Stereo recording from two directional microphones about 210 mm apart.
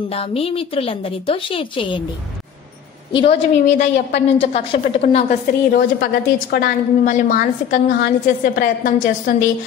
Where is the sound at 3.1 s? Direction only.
25° left (ahead or behind).